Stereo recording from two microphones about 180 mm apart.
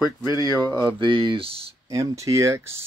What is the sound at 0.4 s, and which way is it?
Speech, 20° right (ahead or behind).